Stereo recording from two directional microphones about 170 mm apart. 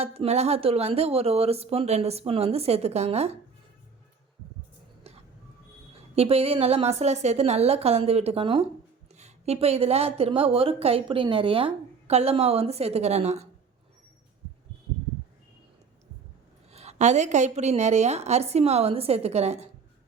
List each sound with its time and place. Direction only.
0.0 s a woman's voice: 35° right (ahead or behind)
5.1 s a sound: 35° right (ahead or behind)
6.1 s a woman's voice: 35° right (ahead or behind)
16.7 s a woman's voice: 40° right (ahead or behind)